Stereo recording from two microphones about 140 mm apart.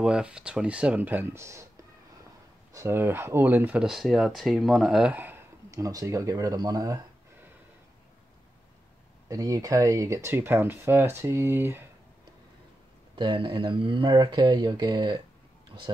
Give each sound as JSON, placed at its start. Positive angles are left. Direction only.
{"t": 0.0, "sound": "speech", "side_deg": -5}
{"t": 2.7, "sound": "speech", "side_deg": -20}
{"t": 3.8, "sound": "speech", "side_deg": 0}
{"t": 9.3, "sound": "speech", "side_deg": -25}
{"t": 13.1, "sound": "speech", "side_deg": -35}